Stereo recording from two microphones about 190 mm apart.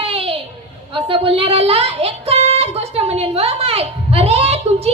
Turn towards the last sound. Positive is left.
turn(degrees=-30)  # may be behind; listen again after turning